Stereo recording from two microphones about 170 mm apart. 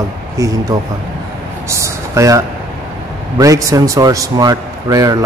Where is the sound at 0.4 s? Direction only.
20° right (ahead or behind).